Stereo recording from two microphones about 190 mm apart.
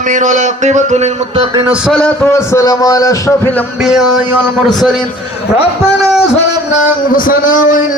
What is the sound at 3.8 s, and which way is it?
A man's voice, centre (ahead or behind).